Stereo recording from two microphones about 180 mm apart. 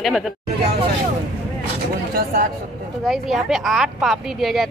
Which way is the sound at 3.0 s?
Centre (ahead or behind).